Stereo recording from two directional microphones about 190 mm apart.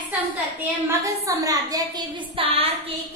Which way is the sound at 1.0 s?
15° right (ahead or behind).